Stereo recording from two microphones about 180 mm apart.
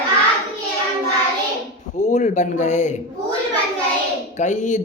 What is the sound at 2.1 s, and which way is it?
Speech, 40° left (ahead or behind).